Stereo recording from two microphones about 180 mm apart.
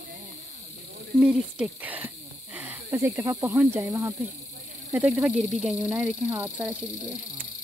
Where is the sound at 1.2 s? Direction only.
5° right (ahead or behind).